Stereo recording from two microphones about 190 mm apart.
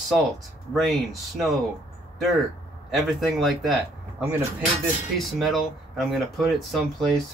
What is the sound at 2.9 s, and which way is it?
Speech, centre (ahead or behind).